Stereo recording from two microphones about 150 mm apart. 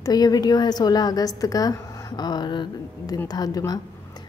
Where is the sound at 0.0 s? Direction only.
25° left (ahead or behind).